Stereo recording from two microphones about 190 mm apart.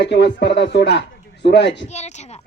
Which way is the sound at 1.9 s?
35° left (ahead or behind).